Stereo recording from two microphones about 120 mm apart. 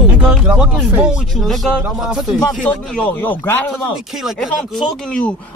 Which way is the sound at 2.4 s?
10° left (ahead or behind).